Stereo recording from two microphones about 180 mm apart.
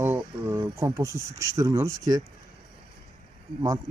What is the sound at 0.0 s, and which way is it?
Speech, 10° right (ahead or behind).